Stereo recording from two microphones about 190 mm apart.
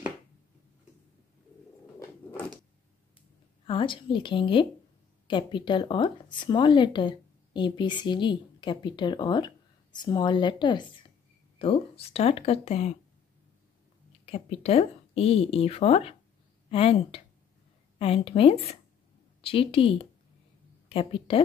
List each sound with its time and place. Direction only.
2.0 s a sound: 10° left (ahead or behind)
3.6 s speech: 25° left (ahead or behind)
14.2 s speech: 30° left (ahead or behind)